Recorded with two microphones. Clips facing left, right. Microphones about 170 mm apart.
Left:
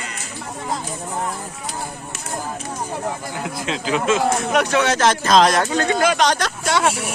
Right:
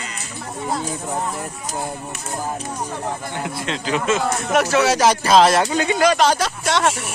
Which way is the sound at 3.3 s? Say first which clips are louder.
Even; centre (ahead or behind).